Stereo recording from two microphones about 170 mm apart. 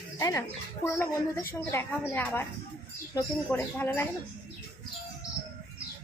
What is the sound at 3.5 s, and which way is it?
Speech, 10° left (ahead or behind).